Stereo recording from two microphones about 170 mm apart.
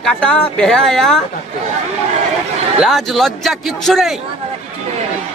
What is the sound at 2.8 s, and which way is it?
Speech, centre (ahead or behind).